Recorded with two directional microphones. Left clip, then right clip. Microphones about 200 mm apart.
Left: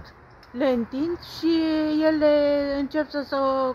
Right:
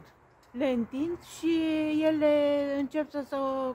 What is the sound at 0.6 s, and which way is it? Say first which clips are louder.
Speech: left 6 dB; 5° left (ahead or behind).